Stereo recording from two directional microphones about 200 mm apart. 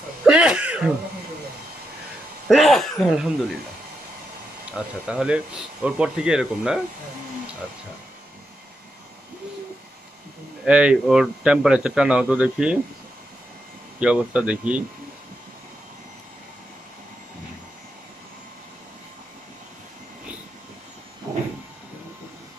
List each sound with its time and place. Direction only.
0.2 s throat clearing: 5° right (ahead or behind)
2.4 s speech: centre (ahead or behind)
4.7 s speech: 5° right (ahead or behind)
10.6 s speech: 5° right (ahead or behind)
13.9 s speech: 5° right (ahead or behind)
21.3 s train: 15° right (ahead or behind)